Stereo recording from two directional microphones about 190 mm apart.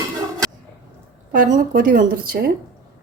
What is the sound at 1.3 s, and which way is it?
A woman's voice, 45° right (ahead or behind).